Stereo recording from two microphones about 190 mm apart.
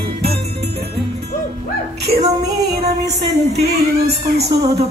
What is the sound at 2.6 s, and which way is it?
Music, 60° right (ahead or behind).